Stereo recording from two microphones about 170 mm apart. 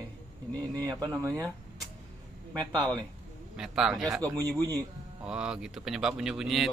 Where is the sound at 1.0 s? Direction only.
15° right (ahead or behind).